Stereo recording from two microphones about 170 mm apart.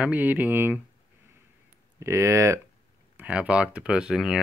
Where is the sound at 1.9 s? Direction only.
15° right (ahead or behind).